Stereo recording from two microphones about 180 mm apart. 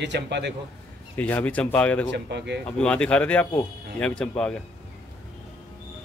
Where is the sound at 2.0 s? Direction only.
70° right (ahead or behind).